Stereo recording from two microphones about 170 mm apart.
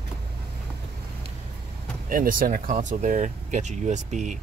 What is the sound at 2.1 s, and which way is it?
Speech, 55° right (ahead or behind).